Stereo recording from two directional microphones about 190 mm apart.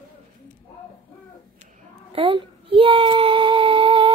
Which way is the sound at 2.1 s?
25° right (ahead or behind).